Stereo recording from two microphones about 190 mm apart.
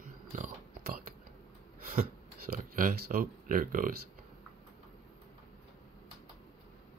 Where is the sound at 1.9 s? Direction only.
50° right (ahead or behind).